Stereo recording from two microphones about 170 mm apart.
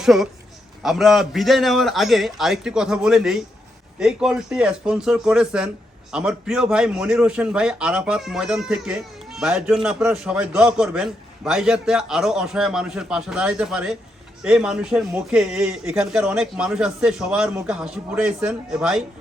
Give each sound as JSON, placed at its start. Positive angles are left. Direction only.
{"t": 0.0, "sound": "a man's voice", "side_deg": 0}